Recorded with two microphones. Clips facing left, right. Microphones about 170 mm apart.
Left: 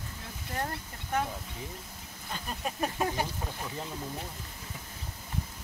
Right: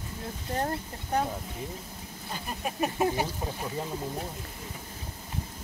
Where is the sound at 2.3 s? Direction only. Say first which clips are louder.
Right 2 dB; 10° right (ahead or behind).